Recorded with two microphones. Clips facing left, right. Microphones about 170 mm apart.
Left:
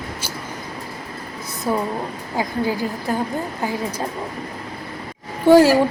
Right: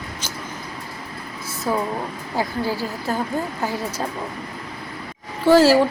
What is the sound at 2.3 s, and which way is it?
Speech, 15° left (ahead or behind).